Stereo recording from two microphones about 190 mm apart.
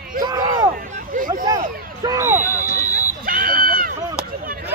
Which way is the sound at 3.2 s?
50° right (ahead or behind).